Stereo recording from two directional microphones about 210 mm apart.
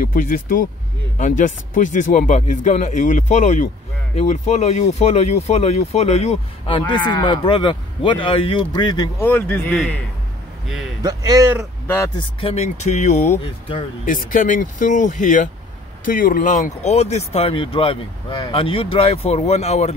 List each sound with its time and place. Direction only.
0.0 s speech: 40° left (ahead or behind); by 9.3 s 15° left (ahead or behind)
9.3 s a man's voice: 5° left (ahead or behind)
11.0 s a man's voice: 20° right (ahead or behind)
12.2 s speech: 25° left (ahead or behind)
14.0 s speech: 40° left (ahead or behind)